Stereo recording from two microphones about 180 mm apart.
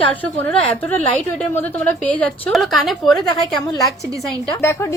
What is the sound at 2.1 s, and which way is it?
A woman's voice, 5° left (ahead or behind).